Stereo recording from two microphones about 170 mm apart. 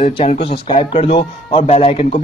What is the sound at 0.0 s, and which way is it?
Speech, 40° left (ahead or behind).